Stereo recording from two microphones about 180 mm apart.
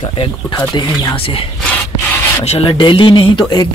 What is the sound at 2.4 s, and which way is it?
Speech, 30° left (ahead or behind).